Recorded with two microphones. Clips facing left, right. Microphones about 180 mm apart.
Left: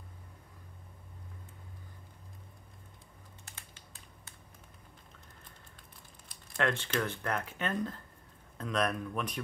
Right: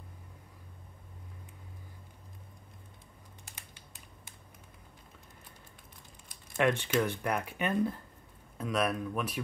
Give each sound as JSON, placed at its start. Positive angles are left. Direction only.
{"t": 3.5, "sound": "typing", "side_deg": -15}
{"t": 6.6, "sound": "speech", "side_deg": -15}